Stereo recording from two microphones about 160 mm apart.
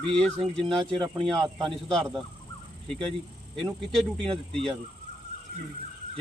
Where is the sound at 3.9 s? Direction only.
Centre (ahead or behind).